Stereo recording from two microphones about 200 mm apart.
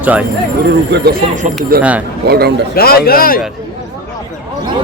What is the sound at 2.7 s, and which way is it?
Speech, 50° left (ahead or behind).